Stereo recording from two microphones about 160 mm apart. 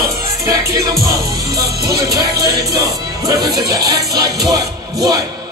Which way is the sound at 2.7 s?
20° right (ahead or behind).